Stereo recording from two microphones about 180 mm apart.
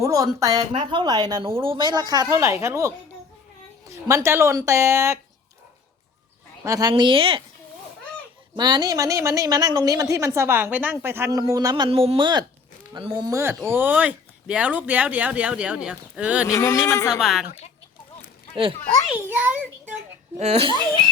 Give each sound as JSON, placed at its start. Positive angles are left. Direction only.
{"t": 0.0, "sound": "a woman's voice", "side_deg": -15}
{"t": 6.7, "sound": "a woman's voice", "side_deg": -20}
{"t": 8.5, "sound": "a woman's voice", "side_deg": -25}
{"t": 16.5, "sound": "speech", "side_deg": 15}
{"t": 17.1, "sound": "speech", "side_deg": 0}
{"t": 19.0, "sound": "speech", "side_deg": -10}
{"t": 20.4, "sound": "speech", "side_deg": -35}